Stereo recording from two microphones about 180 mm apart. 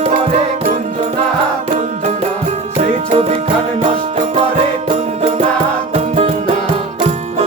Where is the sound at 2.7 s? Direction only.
35° right (ahead or behind).